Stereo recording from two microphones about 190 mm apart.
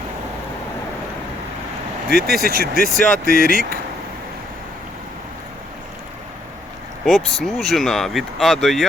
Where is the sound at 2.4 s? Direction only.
55° right (ahead or behind).